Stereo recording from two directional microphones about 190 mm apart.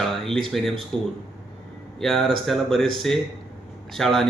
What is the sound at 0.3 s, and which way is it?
Speech, centre (ahead or behind).